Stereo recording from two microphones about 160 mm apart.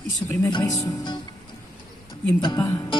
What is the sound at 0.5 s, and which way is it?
Speech, 25° left (ahead or behind).